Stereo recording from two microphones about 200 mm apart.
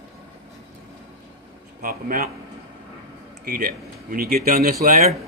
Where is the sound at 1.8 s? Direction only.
45° right (ahead or behind).